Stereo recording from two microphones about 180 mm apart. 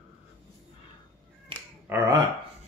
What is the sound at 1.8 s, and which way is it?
Speech, 10° right (ahead or behind).